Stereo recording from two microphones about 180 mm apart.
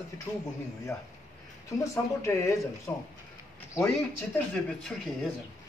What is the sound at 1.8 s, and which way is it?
Speech, 15° left (ahead or behind).